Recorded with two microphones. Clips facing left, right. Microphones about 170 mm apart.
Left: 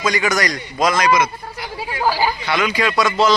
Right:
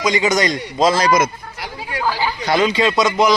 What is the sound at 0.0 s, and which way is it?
A man's voice, 20° right (ahead or behind).